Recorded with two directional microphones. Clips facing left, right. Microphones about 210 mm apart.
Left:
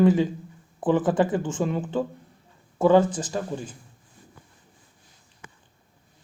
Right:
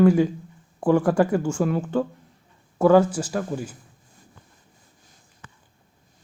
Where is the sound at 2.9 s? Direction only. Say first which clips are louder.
Right 2 dB; 10° right (ahead or behind).